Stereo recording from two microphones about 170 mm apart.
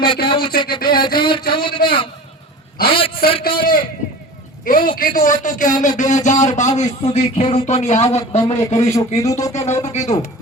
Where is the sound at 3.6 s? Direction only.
55° left (ahead or behind); by 8.6 s 40° left (ahead or behind).